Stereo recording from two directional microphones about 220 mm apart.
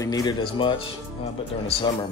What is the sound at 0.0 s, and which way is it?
Speech, 15° left (ahead or behind).